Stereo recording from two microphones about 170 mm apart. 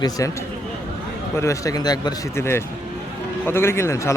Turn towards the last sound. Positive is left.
turn(degrees=15)  # may be behind; listen again after turning